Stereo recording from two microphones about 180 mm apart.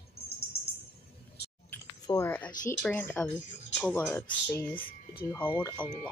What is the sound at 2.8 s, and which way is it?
Speech, 5° left (ahead or behind).